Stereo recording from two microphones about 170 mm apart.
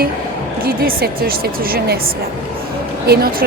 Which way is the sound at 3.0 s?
65° right (ahead or behind).